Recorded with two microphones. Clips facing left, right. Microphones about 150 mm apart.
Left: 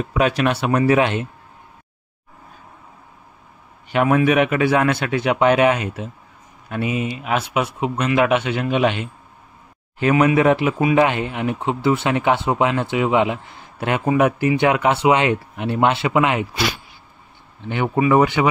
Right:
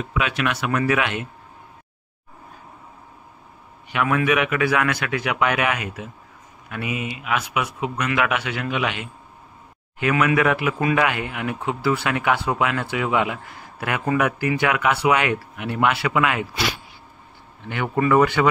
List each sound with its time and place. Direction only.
0.0 s speech: 40° left (ahead or behind)
3.9 s speech: 35° left (ahead or behind)
17.6 s speech: 20° left (ahead or behind)